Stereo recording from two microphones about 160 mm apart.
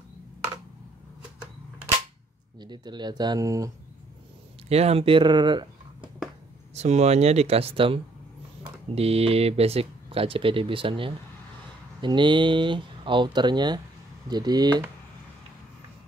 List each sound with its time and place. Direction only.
2.6 s speech: 25° right (ahead or behind)
4.6 s speech: 40° right (ahead or behind)
6.7 s speech: 45° right (ahead or behind); by 14.8 s 25° right (ahead or behind)